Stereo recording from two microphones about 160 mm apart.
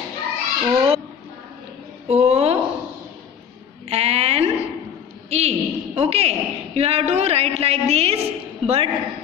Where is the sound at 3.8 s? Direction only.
40° right (ahead or behind).